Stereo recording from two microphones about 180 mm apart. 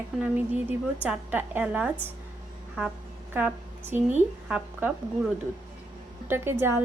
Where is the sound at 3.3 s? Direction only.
10° right (ahead or behind).